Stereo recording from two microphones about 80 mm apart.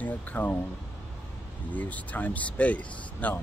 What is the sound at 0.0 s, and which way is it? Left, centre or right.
Speech, left.